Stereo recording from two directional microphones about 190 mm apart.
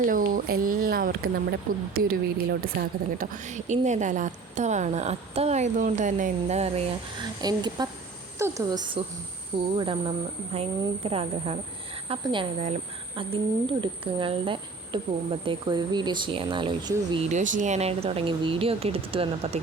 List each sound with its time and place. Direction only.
0.1 s speech: 45° right (ahead or behind)
3.3 s a woman's voice: 40° right (ahead or behind)
7.4 s a woman's voice: 20° right (ahead or behind)
17.3 s a woman's voice: 40° right (ahead or behind)